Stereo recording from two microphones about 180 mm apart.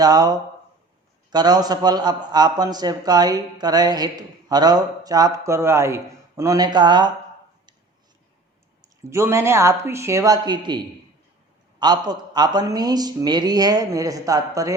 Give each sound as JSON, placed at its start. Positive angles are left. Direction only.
{"t": 0.0, "sound": "a man's voice", "side_deg": -20}
{"t": 8.8, "sound": "a man's voice", "side_deg": -15}